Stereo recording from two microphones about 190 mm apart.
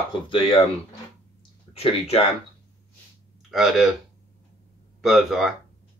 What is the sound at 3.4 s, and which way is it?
Speech, centre (ahead or behind).